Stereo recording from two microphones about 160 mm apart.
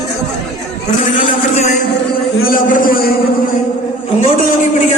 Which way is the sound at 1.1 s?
50° left (ahead or behind).